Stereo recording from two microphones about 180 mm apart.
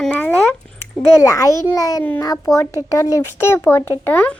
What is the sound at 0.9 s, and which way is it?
A child's voice, 15° left (ahead or behind).